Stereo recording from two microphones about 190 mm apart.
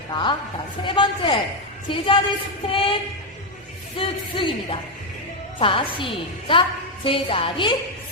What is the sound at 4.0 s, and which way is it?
Speech, 25° left (ahead or behind).